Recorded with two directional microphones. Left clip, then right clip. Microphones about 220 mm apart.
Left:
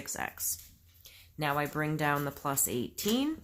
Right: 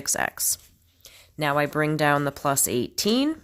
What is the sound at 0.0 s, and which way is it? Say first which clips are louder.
Speech: right 11 dB; 50° right (ahead or behind).